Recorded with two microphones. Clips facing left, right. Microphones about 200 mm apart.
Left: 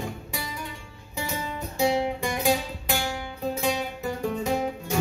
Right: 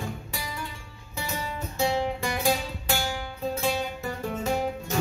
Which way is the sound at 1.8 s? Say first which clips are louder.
Left 2 dB; 15° left (ahead or behind).